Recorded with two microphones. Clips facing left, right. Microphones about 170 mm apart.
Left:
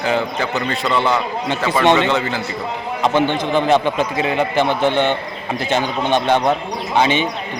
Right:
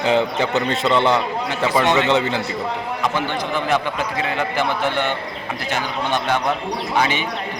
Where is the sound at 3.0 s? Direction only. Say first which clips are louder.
Left 7 dB; 25° left (ahead or behind).